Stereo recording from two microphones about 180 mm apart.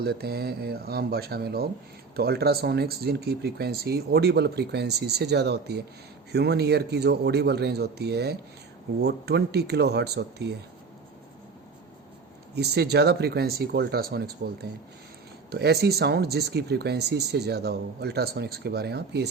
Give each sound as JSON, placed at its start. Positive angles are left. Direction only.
{"t": 0.0, "sound": "speech", "side_deg": -60}
{"t": 12.5, "sound": "speech", "side_deg": -65}